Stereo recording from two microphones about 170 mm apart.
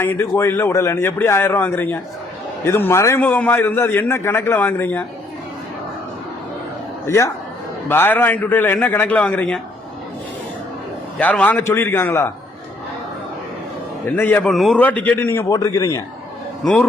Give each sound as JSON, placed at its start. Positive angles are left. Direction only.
{"t": 0.0, "sound": "a man's voice", "side_deg": 15}
{"t": 7.1, "sound": "a man's voice", "side_deg": 15}
{"t": 11.2, "sound": "a man's voice", "side_deg": 10}
{"t": 14.2, "sound": "a man's voice", "side_deg": 10}